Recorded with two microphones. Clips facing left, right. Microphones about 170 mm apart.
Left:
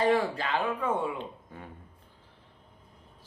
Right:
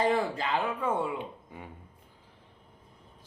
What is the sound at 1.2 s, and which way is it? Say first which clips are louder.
Speech: even; 15° right (ahead or behind).